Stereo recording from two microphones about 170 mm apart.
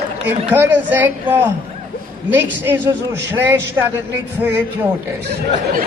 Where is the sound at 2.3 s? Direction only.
10° right (ahead or behind).